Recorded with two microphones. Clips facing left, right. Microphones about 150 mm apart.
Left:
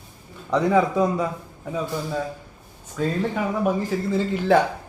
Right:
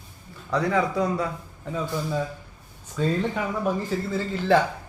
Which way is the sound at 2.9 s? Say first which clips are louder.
Left 1 dB; 5° left (ahead or behind).